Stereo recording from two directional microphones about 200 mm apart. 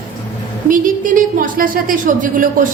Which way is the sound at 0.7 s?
40° right (ahead or behind).